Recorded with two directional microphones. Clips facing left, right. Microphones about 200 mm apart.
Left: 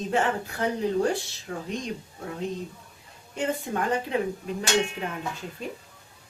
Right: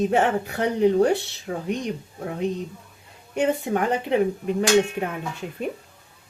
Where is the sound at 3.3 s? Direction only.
65° right (ahead or behind).